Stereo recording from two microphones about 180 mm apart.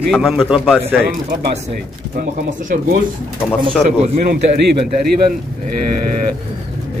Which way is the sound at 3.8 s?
45° right (ahead or behind).